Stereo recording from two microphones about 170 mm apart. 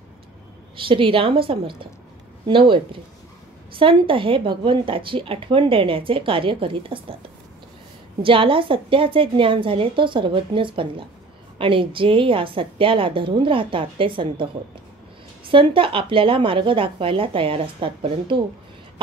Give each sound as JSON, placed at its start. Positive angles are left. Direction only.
{"t": 0.7, "sound": "speech", "side_deg": -30}
{"t": 8.2, "sound": "speech", "side_deg": -30}